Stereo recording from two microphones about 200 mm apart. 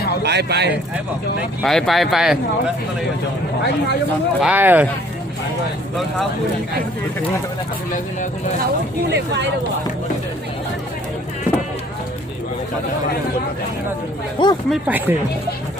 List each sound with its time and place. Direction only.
0.2 s speech: 55° right (ahead or behind)
1.6 s speech: centre (ahead or behind)
4.4 s speech: 5° right (ahead or behind)
9.0 s speech: 60° right (ahead or behind)
14.7 s speech: 10° right (ahead or behind)